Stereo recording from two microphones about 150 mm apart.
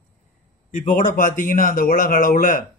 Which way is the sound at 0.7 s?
60° left (ahead or behind).